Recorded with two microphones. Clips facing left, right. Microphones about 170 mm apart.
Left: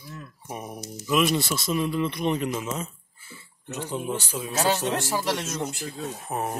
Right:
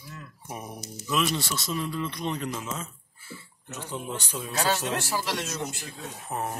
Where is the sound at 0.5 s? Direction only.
10° left (ahead or behind).